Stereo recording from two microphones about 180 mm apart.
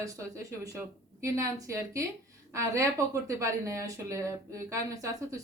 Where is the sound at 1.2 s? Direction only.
15° right (ahead or behind).